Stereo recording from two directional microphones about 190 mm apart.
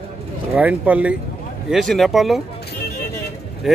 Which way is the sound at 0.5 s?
10° right (ahead or behind).